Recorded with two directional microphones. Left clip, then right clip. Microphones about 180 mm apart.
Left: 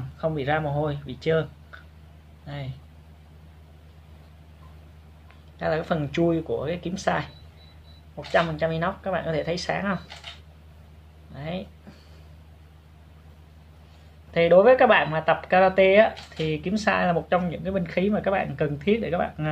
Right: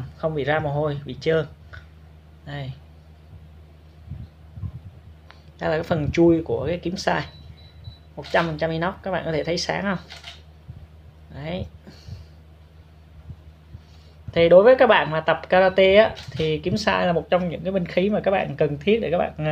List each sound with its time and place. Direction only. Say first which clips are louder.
0.2 s a man's voice: right 2 dB; 20° right (ahead or behind)
5.6 s speech: right 2 dB; 20° right (ahead or behind)
8.3 s speech: right 1 dB; 25° right (ahead or behind)
11.3 s speech: right 2 dB; 25° right (ahead or behind)
14.3 s speech: right 3 dB; 20° right (ahead or behind)